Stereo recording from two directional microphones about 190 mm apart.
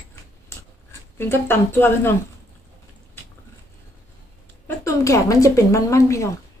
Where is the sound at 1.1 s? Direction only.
10° left (ahead or behind).